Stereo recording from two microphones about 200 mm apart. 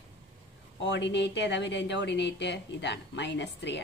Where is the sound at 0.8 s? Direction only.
60° left (ahead or behind).